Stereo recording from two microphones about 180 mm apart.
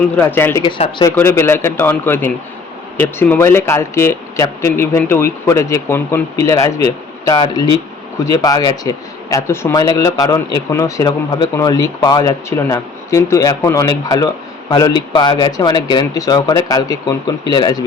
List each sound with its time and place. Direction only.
0.0 s speech: 10° left (ahead or behind)
0.6 s a man's voice: 25° left (ahead or behind)
1.1 s a man's voice: 15° left (ahead or behind)